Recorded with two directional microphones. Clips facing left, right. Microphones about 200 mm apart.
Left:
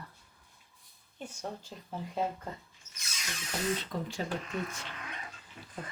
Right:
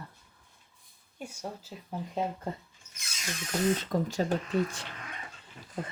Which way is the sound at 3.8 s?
45° right (ahead or behind).